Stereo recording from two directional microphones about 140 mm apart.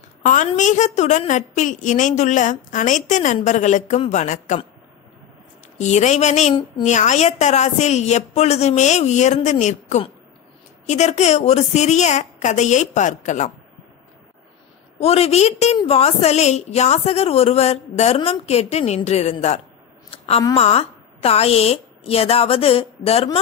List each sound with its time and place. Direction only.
0.2 s a woman's voice: 65° left (ahead or behind)
5.8 s a woman's voice: 55° left (ahead or behind)
15.0 s a woman's voice: 45° left (ahead or behind)
20.1 s a sound: 45° left (ahead or behind)
20.5 s a woman's voice: 45° left (ahead or behind)